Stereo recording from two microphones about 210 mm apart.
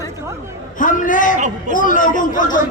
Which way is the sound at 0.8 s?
40° left (ahead or behind).